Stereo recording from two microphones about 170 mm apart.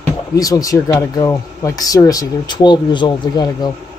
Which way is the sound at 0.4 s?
20° left (ahead or behind).